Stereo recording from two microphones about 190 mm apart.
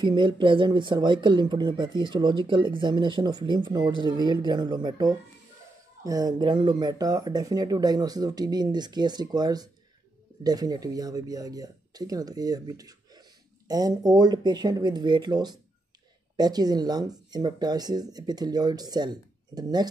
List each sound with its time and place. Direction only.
0.0 s speech: 25° right (ahead or behind)